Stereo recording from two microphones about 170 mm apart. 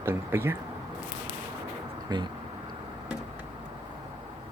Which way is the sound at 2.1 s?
25° right (ahead or behind).